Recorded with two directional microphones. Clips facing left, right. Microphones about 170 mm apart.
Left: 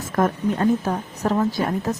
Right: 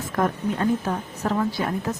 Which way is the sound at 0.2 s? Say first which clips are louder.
Left 3 dB; 40° left (ahead or behind).